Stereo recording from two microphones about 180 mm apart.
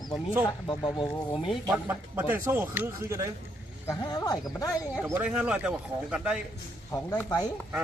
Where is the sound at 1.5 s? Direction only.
5° right (ahead or behind).